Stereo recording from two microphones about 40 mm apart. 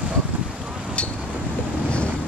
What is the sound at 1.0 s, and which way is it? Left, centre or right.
Vehicle, left.